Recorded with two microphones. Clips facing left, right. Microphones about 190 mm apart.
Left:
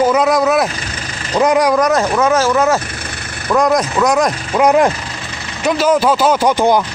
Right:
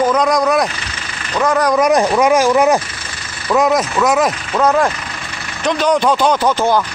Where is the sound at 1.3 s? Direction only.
20° left (ahead or behind).